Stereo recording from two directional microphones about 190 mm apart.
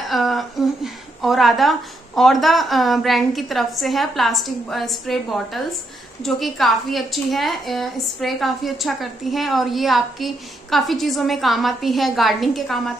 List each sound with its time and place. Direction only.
0.1 s a woman's voice: centre (ahead or behind)